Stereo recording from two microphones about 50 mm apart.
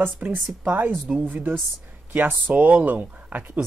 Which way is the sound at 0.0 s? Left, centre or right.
Right.